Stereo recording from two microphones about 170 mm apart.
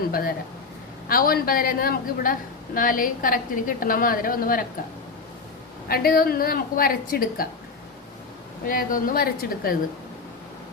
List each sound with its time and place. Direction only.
0.1 s a woman's voice: 60° left (ahead or behind)
5.9 s a woman's voice: 60° left (ahead or behind)
8.6 s a woman's voice: 55° left (ahead or behind)